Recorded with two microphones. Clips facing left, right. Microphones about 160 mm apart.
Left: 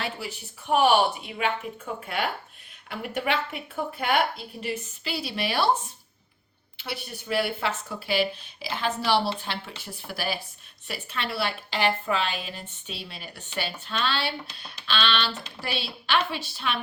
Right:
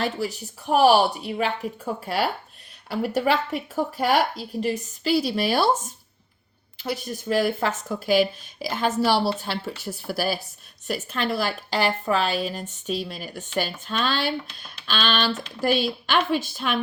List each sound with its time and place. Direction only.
0.0 s speech: 40° right (ahead or behind)